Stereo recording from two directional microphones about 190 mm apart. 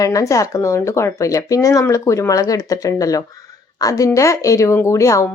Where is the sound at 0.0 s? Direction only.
15° left (ahead or behind).